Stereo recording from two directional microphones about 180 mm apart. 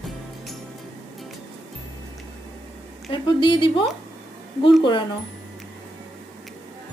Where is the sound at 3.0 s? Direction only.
30° left (ahead or behind).